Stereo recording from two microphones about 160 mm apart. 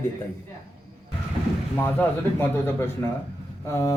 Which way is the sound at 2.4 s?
15° left (ahead or behind).